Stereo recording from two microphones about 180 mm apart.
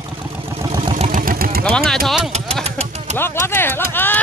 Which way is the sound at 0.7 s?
30° right (ahead or behind).